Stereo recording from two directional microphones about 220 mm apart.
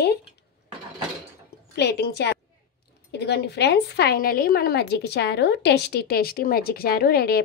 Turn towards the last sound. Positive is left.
turn(degrees=45)  # may be behind; listen again after turning